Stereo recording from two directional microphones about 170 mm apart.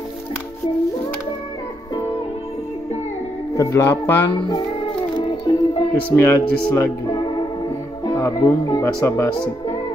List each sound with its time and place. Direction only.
3.5 s speech: 15° left (ahead or behind)
4.5 s music: 25° left (ahead or behind)
6.1 s speech: 15° left (ahead or behind)